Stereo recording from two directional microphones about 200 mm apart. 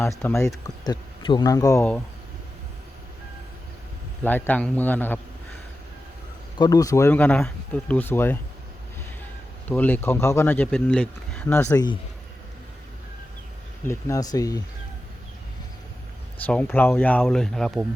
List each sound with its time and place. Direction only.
0.0 s speech: 10° left (ahead or behind)
4.2 s speech: 10° left (ahead or behind)
6.6 s speech: 15° left (ahead or behind)
9.6 s speech: 10° left (ahead or behind)
13.8 s speech: 15° left (ahead or behind)
16.4 s speech: 5° left (ahead or behind)